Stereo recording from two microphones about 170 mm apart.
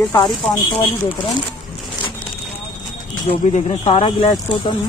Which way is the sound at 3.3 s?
40° left (ahead or behind).